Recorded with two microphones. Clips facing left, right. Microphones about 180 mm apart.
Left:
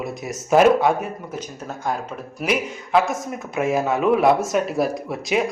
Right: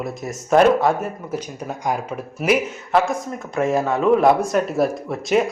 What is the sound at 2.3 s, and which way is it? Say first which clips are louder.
Speech: right 4 dB; 5° right (ahead or behind).